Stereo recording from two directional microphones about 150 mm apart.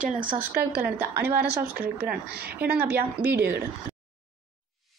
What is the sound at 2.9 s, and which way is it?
Speech, 90° right.